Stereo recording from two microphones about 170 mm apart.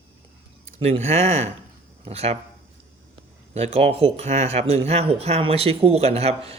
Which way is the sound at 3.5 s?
35° right (ahead or behind).